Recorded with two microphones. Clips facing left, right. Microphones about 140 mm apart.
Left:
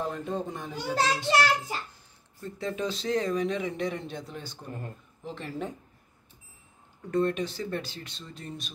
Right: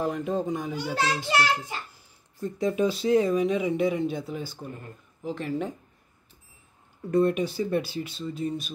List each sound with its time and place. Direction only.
0.0 s speech: 5° right (ahead or behind)
0.9 s a child's voice: 35° left (ahead or behind)
2.4 s speech: 10° right (ahead or behind)
7.1 s speech: 10° right (ahead or behind)